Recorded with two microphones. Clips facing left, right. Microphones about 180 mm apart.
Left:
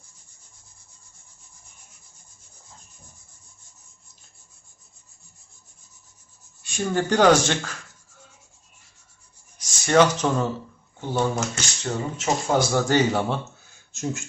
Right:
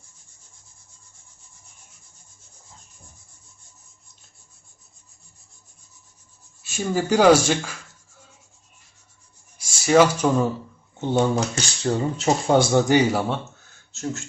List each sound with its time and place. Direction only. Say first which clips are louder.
6.6 s speech: even; 5° right (ahead or behind)
9.6 s speech: right 2 dB; 5° right (ahead or behind)
11.0 s speech: right 4 dB; 30° right (ahead or behind)
12.9 s speech: right 2 dB; 10° right (ahead or behind)
13.9 s speech: even; 15° left (ahead or behind)